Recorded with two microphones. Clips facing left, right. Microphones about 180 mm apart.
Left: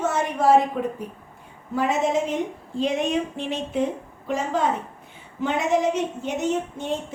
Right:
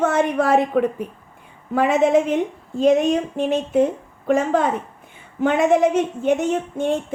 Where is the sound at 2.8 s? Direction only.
45° right (ahead or behind).